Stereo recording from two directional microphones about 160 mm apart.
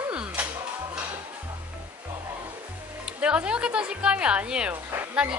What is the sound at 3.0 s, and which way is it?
Speech, 5° right (ahead or behind).